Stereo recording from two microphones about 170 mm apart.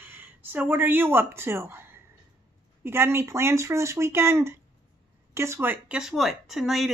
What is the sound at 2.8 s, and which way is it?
Speech, 15° right (ahead or behind).